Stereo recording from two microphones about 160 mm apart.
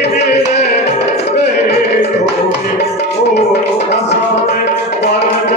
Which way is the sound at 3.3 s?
90° left.